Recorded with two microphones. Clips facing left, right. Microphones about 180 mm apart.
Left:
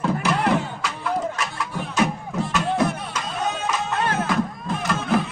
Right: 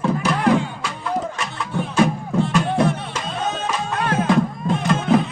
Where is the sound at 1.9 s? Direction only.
30° right (ahead or behind).